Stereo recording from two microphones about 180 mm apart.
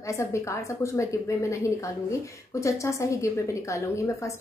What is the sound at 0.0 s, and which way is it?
A woman's voice, 15° left (ahead or behind).